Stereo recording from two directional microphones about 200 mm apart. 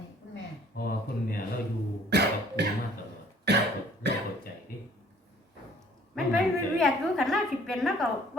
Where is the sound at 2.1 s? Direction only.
55° right (ahead or behind).